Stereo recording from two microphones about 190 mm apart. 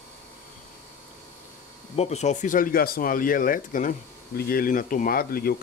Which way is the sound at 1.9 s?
35° left (ahead or behind).